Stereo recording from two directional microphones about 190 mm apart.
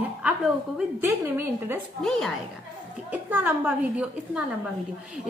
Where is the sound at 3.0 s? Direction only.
10° right (ahead or behind).